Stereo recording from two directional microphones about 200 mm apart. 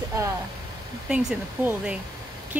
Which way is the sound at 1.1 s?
5° right (ahead or behind).